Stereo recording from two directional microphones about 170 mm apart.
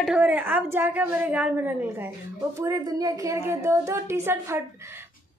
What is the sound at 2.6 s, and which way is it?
Speech, 20° right (ahead or behind).